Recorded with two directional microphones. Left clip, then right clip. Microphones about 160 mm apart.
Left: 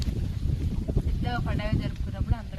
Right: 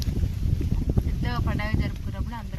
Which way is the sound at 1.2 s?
5° left (ahead or behind).